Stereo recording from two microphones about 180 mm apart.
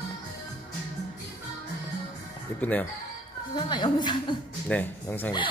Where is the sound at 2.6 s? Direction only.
10° left (ahead or behind).